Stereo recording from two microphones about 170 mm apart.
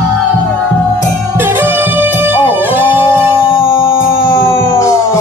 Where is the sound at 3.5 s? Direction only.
30° left (ahead or behind).